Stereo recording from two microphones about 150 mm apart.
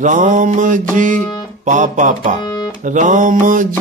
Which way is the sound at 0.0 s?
60° right (ahead or behind).